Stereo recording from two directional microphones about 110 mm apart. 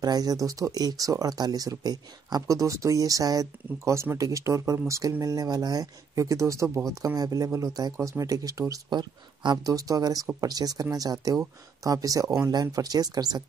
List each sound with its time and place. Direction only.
0.0 s speech: 35° right (ahead or behind)